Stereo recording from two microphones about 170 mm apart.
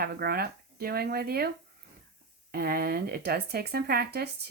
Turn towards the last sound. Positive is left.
turn(degrees=-70)  # may be behind; listen again after turning